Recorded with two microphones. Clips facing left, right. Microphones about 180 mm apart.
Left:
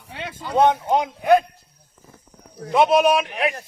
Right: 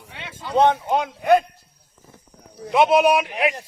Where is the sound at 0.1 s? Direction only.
40° left (ahead or behind).